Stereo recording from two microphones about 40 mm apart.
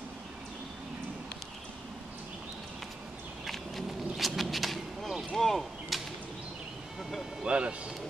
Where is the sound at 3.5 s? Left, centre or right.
Centre.